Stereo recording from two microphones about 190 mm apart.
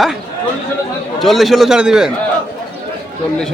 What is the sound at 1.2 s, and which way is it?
Speech, centre (ahead or behind).